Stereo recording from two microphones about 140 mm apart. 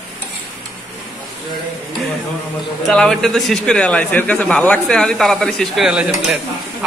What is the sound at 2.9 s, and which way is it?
Speech, 5° left (ahead or behind).